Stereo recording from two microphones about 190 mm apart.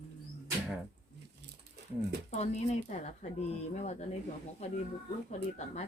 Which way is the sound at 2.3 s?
35° left (ahead or behind).